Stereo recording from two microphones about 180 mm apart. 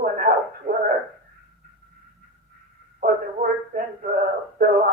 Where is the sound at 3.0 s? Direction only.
50° right (ahead or behind).